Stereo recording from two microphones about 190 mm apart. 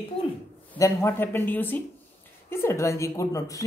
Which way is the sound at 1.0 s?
10° left (ahead or behind).